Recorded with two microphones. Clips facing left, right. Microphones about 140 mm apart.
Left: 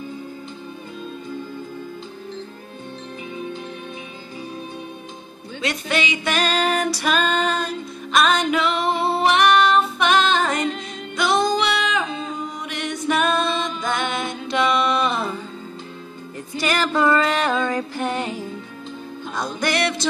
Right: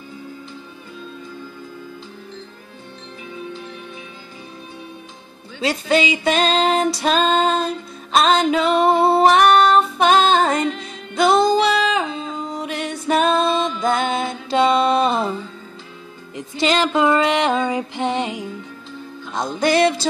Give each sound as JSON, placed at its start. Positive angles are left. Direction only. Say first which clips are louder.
{"t": 5.6, "sound": "female singing", "louder": "right 6 dB", "side_deg": -30}
{"t": 11.1, "sound": "music", "louder": "right 5 dB", "side_deg": -30}
{"t": 16.3, "sound": "music", "louder": "right 4 dB", "side_deg": -20}